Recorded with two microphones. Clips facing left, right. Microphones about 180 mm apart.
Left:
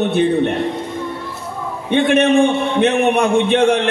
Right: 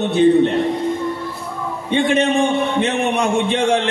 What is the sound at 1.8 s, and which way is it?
A man's voice, 60° left (ahead or behind).